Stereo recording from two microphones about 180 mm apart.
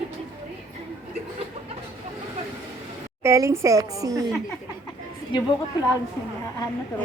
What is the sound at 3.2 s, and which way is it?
A woman's voice, 15° right (ahead or behind).